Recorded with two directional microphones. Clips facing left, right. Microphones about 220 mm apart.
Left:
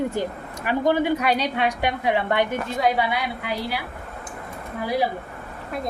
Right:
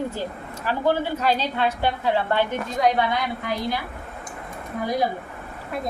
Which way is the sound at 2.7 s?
5° left (ahead or behind).